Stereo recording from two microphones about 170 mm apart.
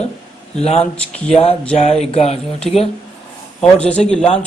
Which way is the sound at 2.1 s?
40° left (ahead or behind).